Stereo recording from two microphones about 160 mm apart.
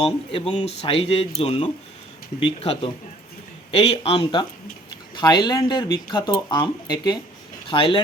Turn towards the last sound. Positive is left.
turn(degrees=35)  # may be behind; listen again after turning